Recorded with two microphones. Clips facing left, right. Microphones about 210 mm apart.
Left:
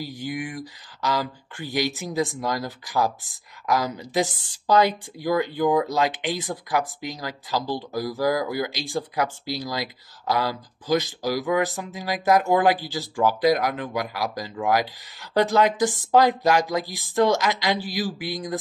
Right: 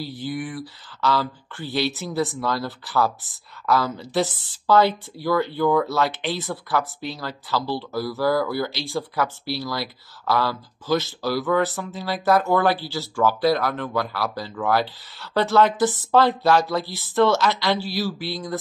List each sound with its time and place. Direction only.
0.0 s speech: 15° left (ahead or behind)